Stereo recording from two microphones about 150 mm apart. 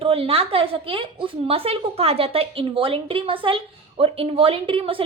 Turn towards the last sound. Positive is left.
turn(degrees=-35)  # may be behind; listen again after turning